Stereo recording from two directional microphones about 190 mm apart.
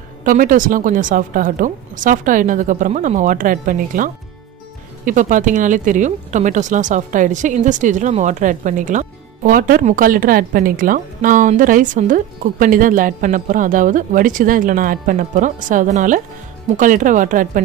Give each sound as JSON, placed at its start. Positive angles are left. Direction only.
{"t": 0.2, "sound": "speech", "side_deg": -45}